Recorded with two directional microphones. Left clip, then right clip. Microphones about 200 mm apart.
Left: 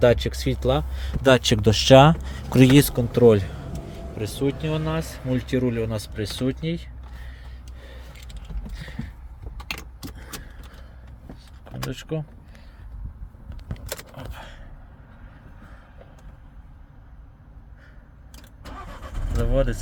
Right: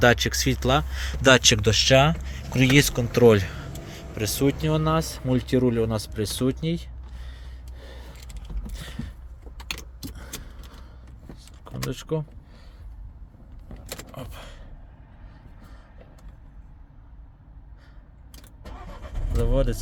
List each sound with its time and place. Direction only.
0.0 s speech: 5° left (ahead or behind)
1.2 s speech: 20° left (ahead or behind); by 2.7 s 40° left (ahead or behind)
2.7 s speech: 25° left (ahead or behind); by 4.3 s centre (ahead or behind)
4.4 s speech: 30° right (ahead or behind)
7.3 s gasp: 25° right (ahead or behind)
8.7 s a sound: 35° right (ahead or behind)
11.9 s speech: 20° right (ahead or behind)
19.4 s speech: 15° right (ahead or behind)